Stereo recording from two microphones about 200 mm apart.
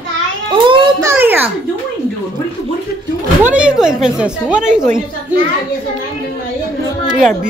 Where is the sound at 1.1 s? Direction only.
10° right (ahead or behind).